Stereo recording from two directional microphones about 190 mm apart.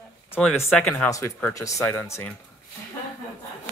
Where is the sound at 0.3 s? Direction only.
10° left (ahead or behind).